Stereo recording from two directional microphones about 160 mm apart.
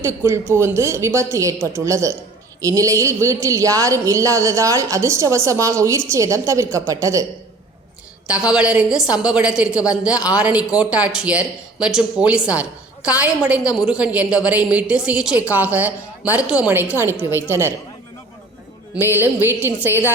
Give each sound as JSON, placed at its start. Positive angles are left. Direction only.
{"t": 0.0, "sound": "a woman's voice", "side_deg": -15}
{"t": 8.3, "sound": "a woman's voice", "side_deg": -5}
{"t": 18.9, "sound": "a woman's voice", "side_deg": -15}